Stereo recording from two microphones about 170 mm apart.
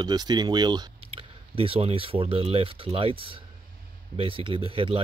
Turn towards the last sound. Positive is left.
turn(degrees=-35)  # may be behind; listen again after turning